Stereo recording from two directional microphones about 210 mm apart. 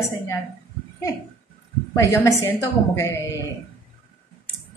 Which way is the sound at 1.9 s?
15° left (ahead or behind).